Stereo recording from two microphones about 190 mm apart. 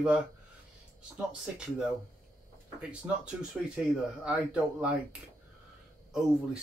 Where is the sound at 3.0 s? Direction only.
10° right (ahead or behind).